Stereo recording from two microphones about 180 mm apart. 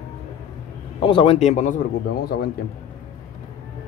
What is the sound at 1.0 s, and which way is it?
Speech, 30° left (ahead or behind).